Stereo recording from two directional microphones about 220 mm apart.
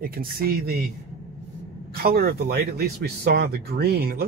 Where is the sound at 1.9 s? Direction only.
45° right (ahead or behind).